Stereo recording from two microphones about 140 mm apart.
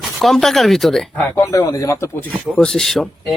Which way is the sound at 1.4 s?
20° left (ahead or behind).